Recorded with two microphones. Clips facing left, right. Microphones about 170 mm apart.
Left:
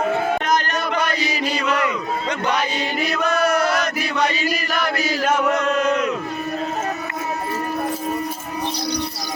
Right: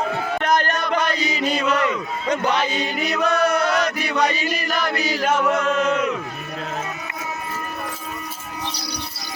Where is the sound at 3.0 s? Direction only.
5° left (ahead or behind).